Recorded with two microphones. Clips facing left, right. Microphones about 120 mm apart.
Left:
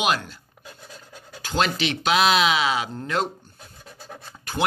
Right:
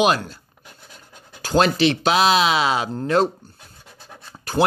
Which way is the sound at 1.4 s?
40° right (ahead or behind).